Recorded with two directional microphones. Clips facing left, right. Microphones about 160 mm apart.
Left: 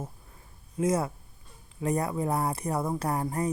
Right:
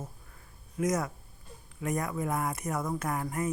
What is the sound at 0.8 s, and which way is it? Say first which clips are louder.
Speech: left 3 dB; 30° left (ahead or behind).